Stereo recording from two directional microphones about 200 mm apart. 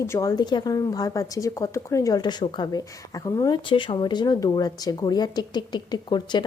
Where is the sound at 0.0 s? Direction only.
15° left (ahead or behind).